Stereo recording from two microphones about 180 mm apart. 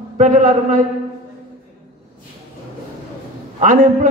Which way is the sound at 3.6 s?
45° right (ahead or behind).